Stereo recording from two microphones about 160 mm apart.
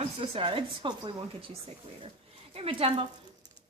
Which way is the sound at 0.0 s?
35° right (ahead or behind).